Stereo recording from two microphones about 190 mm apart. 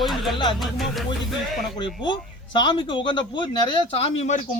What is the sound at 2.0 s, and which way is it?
Speech, 25° left (ahead or behind).